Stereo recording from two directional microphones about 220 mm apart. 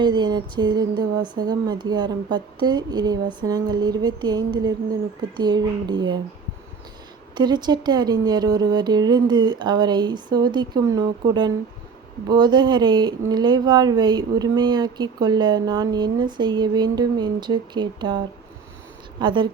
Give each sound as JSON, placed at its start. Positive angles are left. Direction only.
{"t": 0.0, "sound": "speech", "side_deg": -20}
{"t": 7.3, "sound": "speech", "side_deg": -20}
{"t": 19.2, "sound": "speech", "side_deg": -20}